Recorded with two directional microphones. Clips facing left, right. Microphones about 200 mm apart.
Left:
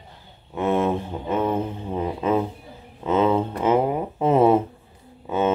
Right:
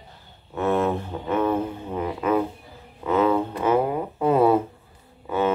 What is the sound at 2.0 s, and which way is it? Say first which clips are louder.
Music: even; 20° left (ahead or behind).